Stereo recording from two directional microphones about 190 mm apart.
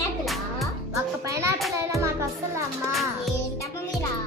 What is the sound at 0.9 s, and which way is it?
Speech, 15° right (ahead or behind).